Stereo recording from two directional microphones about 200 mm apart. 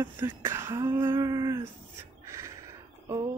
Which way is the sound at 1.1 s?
15° right (ahead or behind).